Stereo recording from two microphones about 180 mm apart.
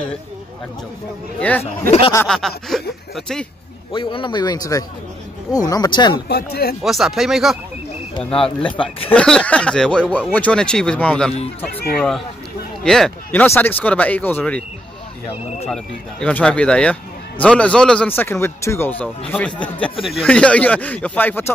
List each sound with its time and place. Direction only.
1.6 s speech: 35° left (ahead or behind)
2.2 s speech: centre (ahead or behind)
3.9 s a man's voice: 30° left (ahead or behind)
6.2 s speech: 65° left (ahead or behind)
6.8 s speech: centre (ahead or behind)
8.3 s a man's voice: 30° left (ahead or behind)
9.1 s speech: 5° left (ahead or behind)
12.8 s speech: 5° left (ahead or behind)
15.7 s speech: 5° left (ahead or behind)